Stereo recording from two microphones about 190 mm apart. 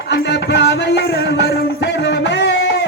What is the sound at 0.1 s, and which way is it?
Music, 60° left (ahead or behind).